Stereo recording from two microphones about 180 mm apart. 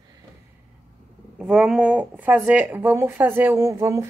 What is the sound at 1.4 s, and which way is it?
Speech, 5° right (ahead or behind).